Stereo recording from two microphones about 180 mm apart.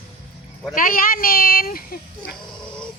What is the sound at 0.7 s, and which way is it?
Speech, 50° left (ahead or behind).